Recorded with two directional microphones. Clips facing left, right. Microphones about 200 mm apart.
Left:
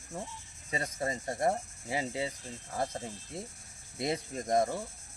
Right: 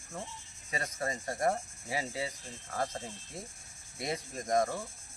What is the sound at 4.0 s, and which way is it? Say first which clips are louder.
Speech: left 3 dB; 25° left (ahead or behind).